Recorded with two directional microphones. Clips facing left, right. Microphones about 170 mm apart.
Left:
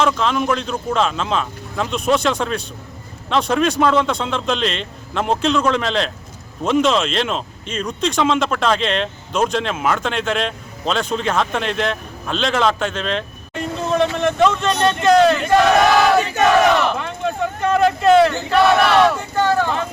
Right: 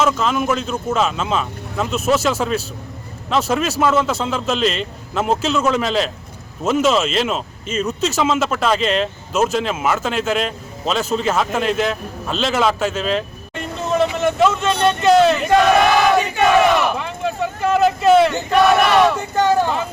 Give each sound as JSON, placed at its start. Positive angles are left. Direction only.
{"t": 0.0, "sound": "speech", "side_deg": -5}
{"t": 16.8, "sound": "speech", "side_deg": -5}
{"t": 18.5, "sound": "battle cry", "side_deg": -15}